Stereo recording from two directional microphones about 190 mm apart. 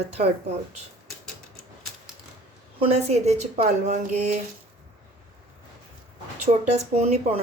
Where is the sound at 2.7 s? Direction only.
30° right (ahead or behind).